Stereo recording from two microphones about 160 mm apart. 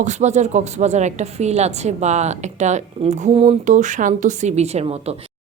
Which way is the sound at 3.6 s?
50° right (ahead or behind).